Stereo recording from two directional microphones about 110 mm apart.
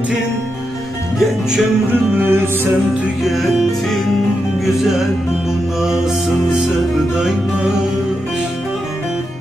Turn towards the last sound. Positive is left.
turn(degrees=-5)  # may be behind; listen again after turning